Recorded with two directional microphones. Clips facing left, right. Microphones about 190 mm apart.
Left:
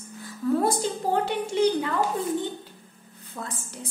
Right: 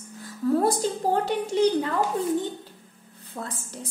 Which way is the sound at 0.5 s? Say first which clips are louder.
Right 1 dB; 40° right (ahead or behind).